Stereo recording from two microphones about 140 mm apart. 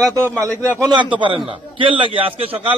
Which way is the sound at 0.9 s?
35° right (ahead or behind).